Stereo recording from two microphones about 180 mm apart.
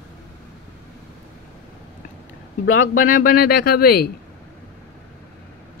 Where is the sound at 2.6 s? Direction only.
90° left.